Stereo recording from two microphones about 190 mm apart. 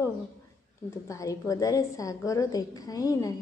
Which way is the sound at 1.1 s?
15° left (ahead or behind).